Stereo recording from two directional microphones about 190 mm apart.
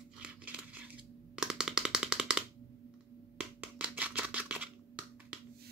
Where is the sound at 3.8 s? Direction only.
5° right (ahead or behind).